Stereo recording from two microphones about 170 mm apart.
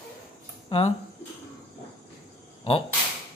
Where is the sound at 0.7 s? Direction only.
30° left (ahead or behind).